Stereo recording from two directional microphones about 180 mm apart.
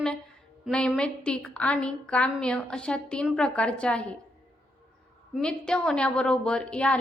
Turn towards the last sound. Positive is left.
turn(degrees=5)  # may be behind; listen again after turning